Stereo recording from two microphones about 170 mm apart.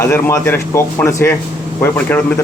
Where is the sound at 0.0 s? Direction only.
15° left (ahead or behind).